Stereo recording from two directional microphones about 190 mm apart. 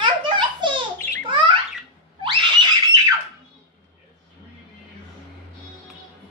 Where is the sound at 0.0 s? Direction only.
25° right (ahead or behind).